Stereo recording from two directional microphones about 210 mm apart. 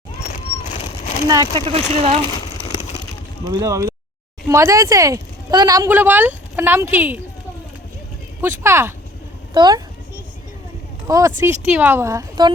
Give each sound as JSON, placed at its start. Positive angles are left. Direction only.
{"t": 0.8, "sound": "a sound", "side_deg": 35}
{"t": 1.3, "sound": "speech", "side_deg": -20}
{"t": 2.6, "sound": "a sound", "side_deg": 30}
{"t": 3.5, "sound": "speech", "side_deg": -15}
{"t": 8.4, "sound": "speech", "side_deg": -10}
{"t": 11.0, "sound": "speech", "side_deg": -15}